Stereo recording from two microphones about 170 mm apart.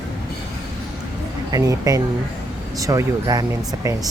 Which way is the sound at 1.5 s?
20° right (ahead or behind).